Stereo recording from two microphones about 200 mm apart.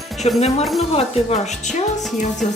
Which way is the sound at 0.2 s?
30° left (ahead or behind).